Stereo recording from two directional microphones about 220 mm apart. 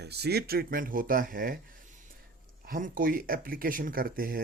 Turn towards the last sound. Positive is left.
turn(degrees=-40)  # may be behind; listen again after turning